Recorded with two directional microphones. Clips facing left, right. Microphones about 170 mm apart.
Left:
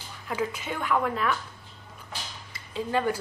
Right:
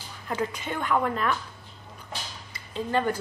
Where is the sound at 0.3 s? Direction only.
5° left (ahead or behind).